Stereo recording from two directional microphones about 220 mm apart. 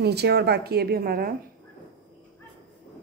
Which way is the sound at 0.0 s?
50° right (ahead or behind).